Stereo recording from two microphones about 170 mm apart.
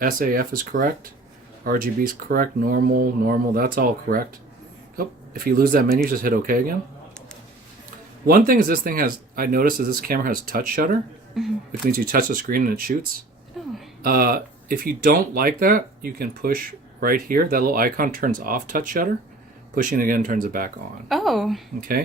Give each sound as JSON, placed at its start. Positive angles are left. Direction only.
{"t": 0.0, "sound": "speech", "side_deg": -55}
{"t": 8.3, "sound": "speech", "side_deg": -60}
{"t": 11.3, "sound": "speech", "side_deg": 0}
{"t": 11.9, "sound": "speech", "side_deg": -55}
{"t": 13.6, "sound": "speech", "side_deg": 0}
{"t": 14.0, "sound": "speech", "side_deg": -60}
{"t": 21.1, "sound": "speech", "side_deg": 0}
{"t": 21.8, "sound": "speech", "side_deg": -55}